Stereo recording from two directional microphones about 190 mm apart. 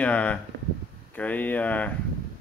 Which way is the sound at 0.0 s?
10° left (ahead or behind).